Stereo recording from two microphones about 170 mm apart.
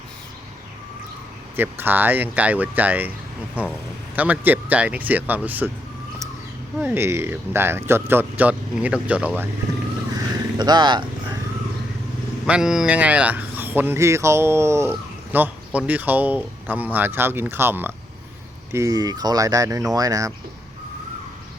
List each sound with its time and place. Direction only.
1.5 s speech: 10° right (ahead or behind)
6.7 s speech: 10° right (ahead or behind)
10.6 s speech: 25° right (ahead or behind)
12.5 s speech: 5° right (ahead or behind); by 20.3 s 20° right (ahead or behind)